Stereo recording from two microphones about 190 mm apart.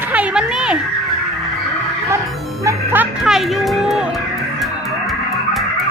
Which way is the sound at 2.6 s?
10° right (ahead or behind).